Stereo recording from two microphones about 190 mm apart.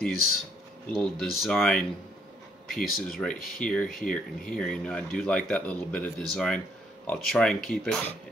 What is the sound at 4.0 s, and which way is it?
Speech, 45° left (ahead or behind).